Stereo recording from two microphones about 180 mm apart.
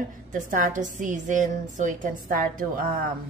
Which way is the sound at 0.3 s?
50° right (ahead or behind).